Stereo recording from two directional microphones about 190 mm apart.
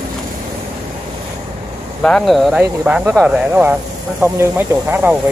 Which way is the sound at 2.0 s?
5° left (ahead or behind).